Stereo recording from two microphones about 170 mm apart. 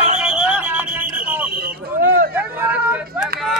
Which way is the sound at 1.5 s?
60° right (ahead or behind).